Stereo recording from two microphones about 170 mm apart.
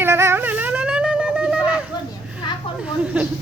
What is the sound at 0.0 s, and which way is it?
Wind instrument, 15° right (ahead or behind).